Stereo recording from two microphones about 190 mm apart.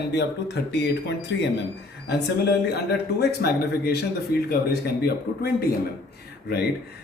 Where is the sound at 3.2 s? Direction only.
55° left (ahead or behind).